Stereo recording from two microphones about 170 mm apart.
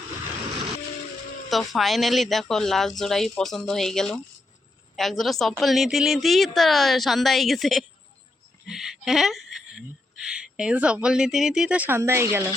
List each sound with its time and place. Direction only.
1.5 s a woman's voice: centre (ahead or behind)